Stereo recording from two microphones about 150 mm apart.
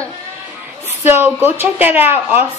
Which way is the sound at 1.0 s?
10° right (ahead or behind).